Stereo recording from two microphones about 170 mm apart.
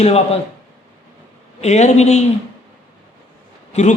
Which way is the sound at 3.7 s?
45° left (ahead or behind).